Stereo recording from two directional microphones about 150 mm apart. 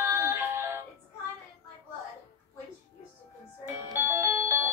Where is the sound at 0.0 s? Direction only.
15° right (ahead or behind).